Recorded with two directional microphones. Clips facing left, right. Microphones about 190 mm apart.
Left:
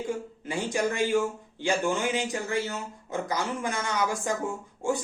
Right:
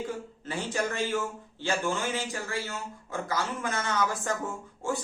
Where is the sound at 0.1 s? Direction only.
15° left (ahead or behind).